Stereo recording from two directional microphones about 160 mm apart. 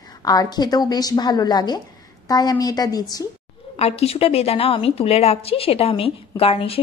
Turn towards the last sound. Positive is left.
turn(degrees=35)  # may be behind; listen again after turning